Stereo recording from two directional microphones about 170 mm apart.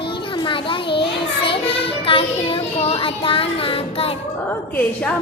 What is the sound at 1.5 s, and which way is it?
Music, 35° left (ahead or behind).